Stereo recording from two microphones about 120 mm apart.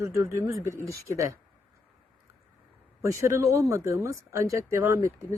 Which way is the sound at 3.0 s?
25° right (ahead or behind).